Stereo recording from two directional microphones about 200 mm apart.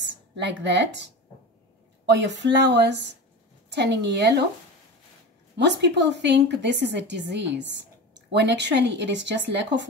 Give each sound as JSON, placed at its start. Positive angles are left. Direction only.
{"t": 0.0, "sound": "a woman's voice", "side_deg": -60}
{"t": 5.6, "sound": "a woman's voice", "side_deg": -60}